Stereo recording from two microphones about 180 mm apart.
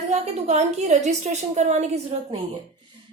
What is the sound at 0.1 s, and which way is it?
A woman's voice, 40° right (ahead or behind).